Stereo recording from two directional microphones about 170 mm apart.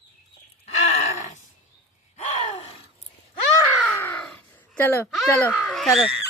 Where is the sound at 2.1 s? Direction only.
40° left (ahead or behind).